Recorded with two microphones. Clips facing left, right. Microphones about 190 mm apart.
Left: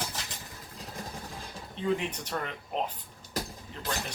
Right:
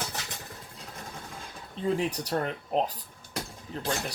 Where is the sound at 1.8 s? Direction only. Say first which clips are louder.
Right 2 dB; 35° right (ahead or behind).